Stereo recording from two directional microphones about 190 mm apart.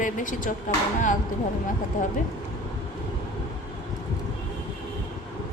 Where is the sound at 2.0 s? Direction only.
45° left (ahead or behind).